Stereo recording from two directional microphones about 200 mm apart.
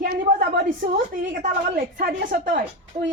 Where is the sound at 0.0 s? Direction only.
45° right (ahead or behind).